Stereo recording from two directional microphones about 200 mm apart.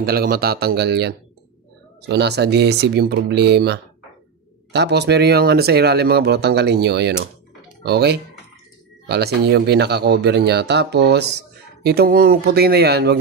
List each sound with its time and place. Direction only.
0.0 s speech: 50° right (ahead or behind)